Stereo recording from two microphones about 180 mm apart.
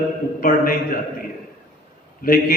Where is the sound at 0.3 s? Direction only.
50° left (ahead or behind).